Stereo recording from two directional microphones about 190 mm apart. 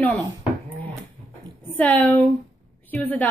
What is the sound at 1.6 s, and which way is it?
Speech, 10° left (ahead or behind).